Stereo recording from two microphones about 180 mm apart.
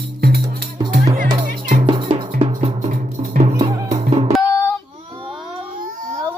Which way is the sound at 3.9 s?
35° right (ahead or behind).